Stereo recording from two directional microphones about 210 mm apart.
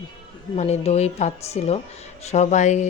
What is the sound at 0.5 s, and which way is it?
A woman's voice, 30° left (ahead or behind).